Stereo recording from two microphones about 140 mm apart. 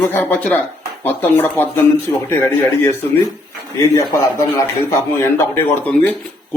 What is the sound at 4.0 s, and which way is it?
Speech, 25° left (ahead or behind).